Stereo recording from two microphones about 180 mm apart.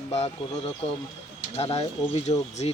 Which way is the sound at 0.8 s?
30° left (ahead or behind).